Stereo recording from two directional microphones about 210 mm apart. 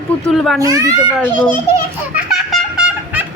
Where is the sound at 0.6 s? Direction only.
15° right (ahead or behind).